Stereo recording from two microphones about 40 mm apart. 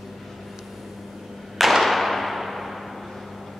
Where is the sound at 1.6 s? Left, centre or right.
Centre.